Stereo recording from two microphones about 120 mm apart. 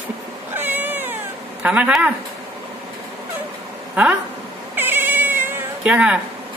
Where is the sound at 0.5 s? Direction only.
15° right (ahead or behind).